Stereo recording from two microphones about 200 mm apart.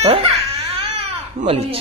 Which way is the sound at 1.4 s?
30° right (ahead or behind).